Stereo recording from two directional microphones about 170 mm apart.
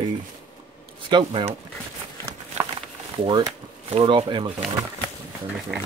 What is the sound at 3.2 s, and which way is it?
Speech, 25° right (ahead or behind).